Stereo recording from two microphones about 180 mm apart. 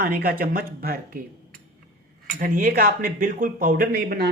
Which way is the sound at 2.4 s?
50° right (ahead or behind).